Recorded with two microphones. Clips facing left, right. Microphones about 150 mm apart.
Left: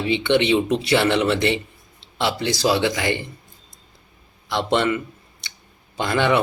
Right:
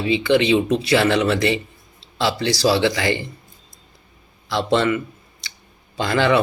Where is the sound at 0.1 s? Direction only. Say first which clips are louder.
Right 2 dB; 25° left (ahead or behind).